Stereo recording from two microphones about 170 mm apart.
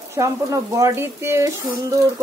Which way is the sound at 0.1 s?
20° right (ahead or behind).